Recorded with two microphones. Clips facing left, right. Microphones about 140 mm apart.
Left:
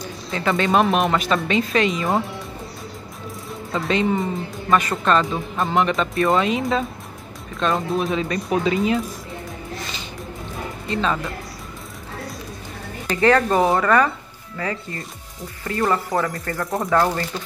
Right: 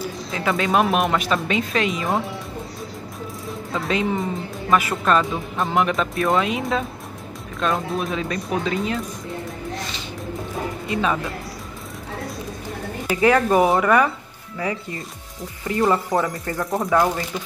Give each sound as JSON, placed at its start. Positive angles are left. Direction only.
{"t": 0.0, "sound": "speech", "side_deg": -5}
{"t": 3.7, "sound": "speech", "side_deg": 0}
{"t": 9.8, "sound": "music", "side_deg": 0}
{"t": 10.9, "sound": "speech", "side_deg": -10}
{"t": 13.0, "sound": "speech", "side_deg": -10}
{"t": 15.9, "sound": "speech", "side_deg": -15}